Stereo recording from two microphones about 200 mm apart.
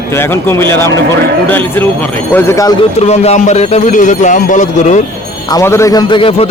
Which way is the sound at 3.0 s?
30° left (ahead or behind).